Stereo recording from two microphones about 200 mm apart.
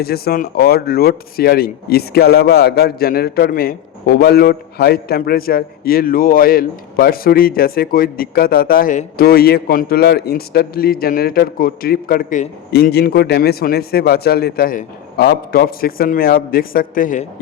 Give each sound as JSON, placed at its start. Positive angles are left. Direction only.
{"t": 0.0, "sound": "speech", "side_deg": 50}
{"t": 12.7, "sound": "speech", "side_deg": 55}